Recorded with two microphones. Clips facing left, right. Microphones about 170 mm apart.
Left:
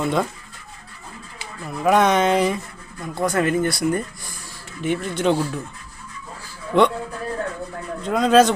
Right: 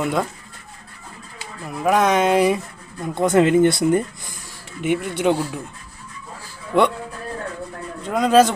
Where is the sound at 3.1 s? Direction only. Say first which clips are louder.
Right 5 dB; 20° right (ahead or behind).